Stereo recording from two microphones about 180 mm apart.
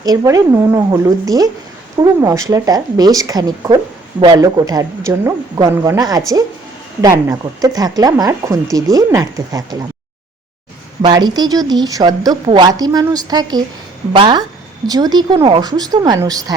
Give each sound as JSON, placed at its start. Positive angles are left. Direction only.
{"t": 0.0, "sound": "a woman's voice", "side_deg": -20}
{"t": 11.0, "sound": "a woman's voice", "side_deg": -25}